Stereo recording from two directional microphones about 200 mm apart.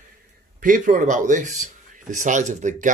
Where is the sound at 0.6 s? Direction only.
40° right (ahead or behind).